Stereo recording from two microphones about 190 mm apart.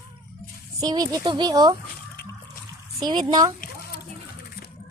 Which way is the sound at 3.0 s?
20° right (ahead or behind).